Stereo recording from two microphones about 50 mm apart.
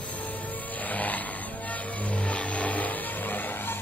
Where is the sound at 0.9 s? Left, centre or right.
Left.